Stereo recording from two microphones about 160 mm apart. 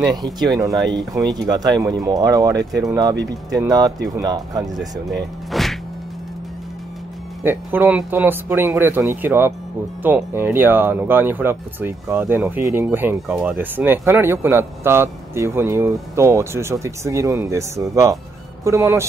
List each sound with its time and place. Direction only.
0.0 s speech: 25° right (ahead or behind)
5.5 s music: centre (ahead or behind)
7.4 s speech: 10° right (ahead or behind)